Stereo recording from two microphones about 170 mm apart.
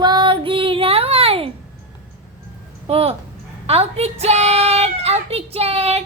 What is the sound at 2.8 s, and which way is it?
A woman's voice, 35° right (ahead or behind).